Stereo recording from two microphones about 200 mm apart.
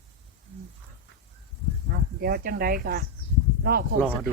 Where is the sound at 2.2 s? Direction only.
50° right (ahead or behind).